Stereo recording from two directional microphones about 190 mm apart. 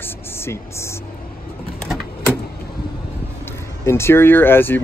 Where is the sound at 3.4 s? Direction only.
15° left (ahead or behind).